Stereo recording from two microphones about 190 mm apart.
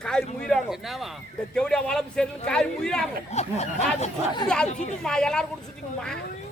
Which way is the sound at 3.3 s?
35° left (ahead or behind).